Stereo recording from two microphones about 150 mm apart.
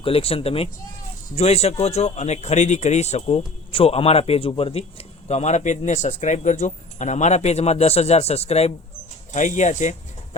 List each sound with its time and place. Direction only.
0.0 s speech: 40° left (ahead or behind)